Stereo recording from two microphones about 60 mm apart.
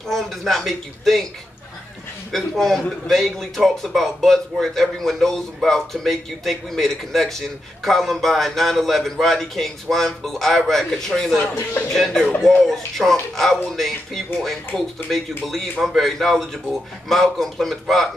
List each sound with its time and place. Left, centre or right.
0.1 s a man's voice: centre
2.3 s a man's voice: centre
11.3 s speech: left
11.9 s a man's voice: centre